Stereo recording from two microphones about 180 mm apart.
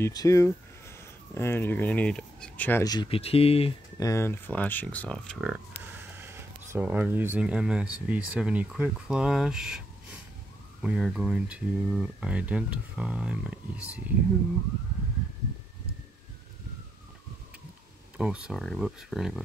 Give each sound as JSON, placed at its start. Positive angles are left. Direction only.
{"t": 0.0, "sound": "speech", "side_deg": 20}
{"t": 4.0, "sound": "speech", "side_deg": 15}
{"t": 6.1, "sound": "speech", "side_deg": -15}
{"t": 18.1, "sound": "speech", "side_deg": -5}